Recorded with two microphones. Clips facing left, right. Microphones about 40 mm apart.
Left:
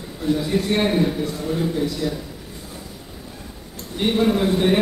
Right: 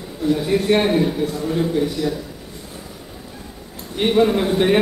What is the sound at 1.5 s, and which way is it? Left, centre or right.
Speech, centre.